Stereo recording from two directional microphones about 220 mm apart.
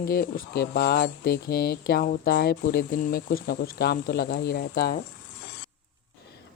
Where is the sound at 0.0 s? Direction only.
45° left (ahead or behind).